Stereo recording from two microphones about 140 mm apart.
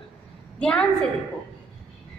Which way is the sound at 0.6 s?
5° left (ahead or behind).